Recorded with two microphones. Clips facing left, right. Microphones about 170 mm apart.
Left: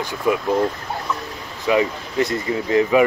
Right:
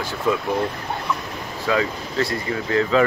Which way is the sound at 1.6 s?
20° left (ahead or behind).